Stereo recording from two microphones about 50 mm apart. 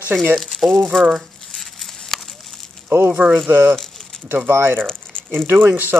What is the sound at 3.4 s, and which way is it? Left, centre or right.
Speech, right.